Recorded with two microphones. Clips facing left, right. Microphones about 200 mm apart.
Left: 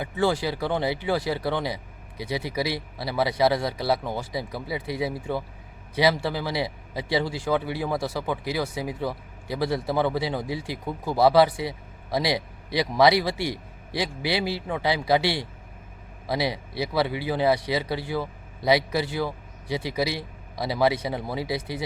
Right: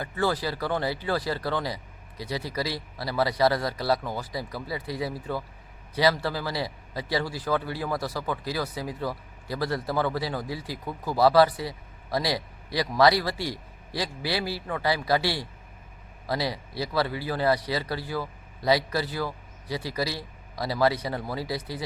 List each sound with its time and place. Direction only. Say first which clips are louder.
0.0 s a man's voice: left 3 dB; 15° left (ahead or behind)